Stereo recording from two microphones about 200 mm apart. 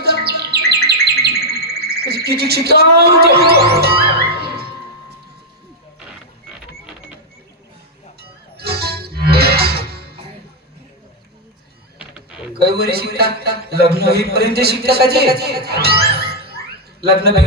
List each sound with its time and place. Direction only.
0.0 s chirp: 50° right (ahead or behind)
0.9 s bird: 30° right (ahead or behind)
1.4 s bird: 15° right (ahead or behind)
1.8 s music: 50° right (ahead or behind)
4.3 s music: 25° right (ahead or behind)
8.5 s music: 55° right (ahead or behind)
12.5 s a man's voice: 50° right (ahead or behind)